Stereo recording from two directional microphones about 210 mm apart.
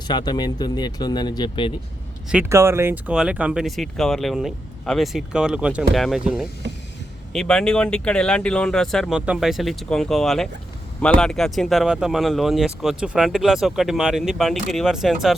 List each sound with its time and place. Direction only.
0.1 s speech: 20° left (ahead or behind)
2.3 s speech: 10° right (ahead or behind)